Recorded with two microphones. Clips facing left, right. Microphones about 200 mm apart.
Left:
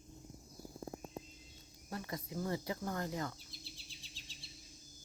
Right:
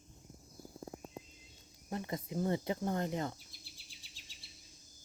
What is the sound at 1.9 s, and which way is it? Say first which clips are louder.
Speech: right 4 dB; 20° right (ahead or behind).